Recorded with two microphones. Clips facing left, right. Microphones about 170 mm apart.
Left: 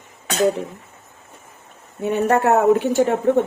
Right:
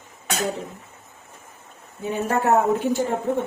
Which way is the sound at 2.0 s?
65° left (ahead or behind).